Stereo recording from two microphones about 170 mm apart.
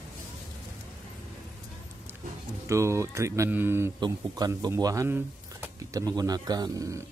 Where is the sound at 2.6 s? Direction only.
15° right (ahead or behind).